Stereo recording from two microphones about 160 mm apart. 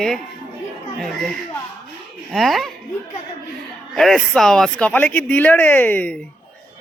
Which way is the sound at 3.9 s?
Centre (ahead or behind).